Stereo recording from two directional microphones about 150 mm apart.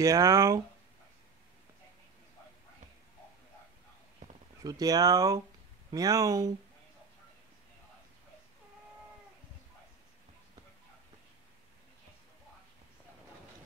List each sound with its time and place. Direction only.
0.0 s speech: 20° right (ahead or behind)
4.6 s speech: 25° right (ahead or behind)